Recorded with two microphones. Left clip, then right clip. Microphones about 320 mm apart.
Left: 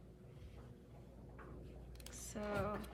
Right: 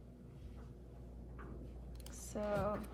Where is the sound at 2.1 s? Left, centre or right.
Centre.